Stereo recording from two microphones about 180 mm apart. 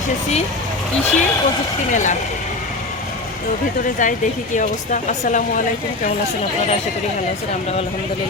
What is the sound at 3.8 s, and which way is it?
Speech, 45° left (ahead or behind).